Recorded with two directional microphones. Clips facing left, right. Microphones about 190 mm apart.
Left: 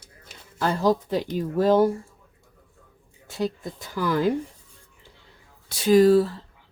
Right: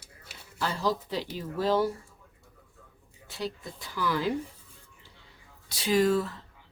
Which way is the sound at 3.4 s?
45° left (ahead or behind).